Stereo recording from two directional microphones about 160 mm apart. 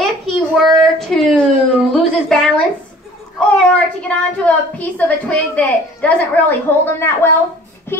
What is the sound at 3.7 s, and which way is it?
A woman's voice, 10° left (ahead or behind).